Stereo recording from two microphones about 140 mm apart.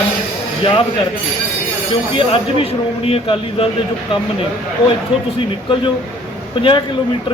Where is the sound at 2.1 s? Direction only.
40° left (ahead or behind).